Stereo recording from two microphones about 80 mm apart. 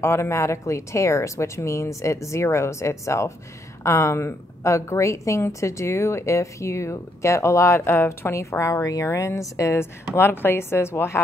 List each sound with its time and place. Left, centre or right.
0.0 s a woman's voice: left